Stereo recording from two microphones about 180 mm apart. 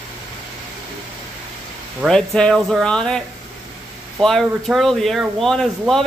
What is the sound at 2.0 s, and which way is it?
Speech, 5° left (ahead or behind).